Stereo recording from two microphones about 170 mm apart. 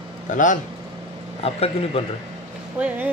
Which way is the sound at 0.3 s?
50° left (ahead or behind).